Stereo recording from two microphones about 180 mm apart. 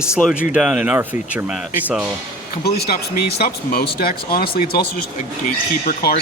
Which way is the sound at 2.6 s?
60° left (ahead or behind).